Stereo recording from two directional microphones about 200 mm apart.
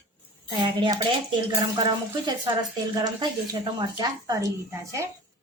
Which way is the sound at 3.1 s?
20° right (ahead or behind).